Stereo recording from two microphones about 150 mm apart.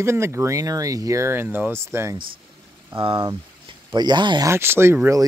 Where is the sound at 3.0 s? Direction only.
35° right (ahead or behind).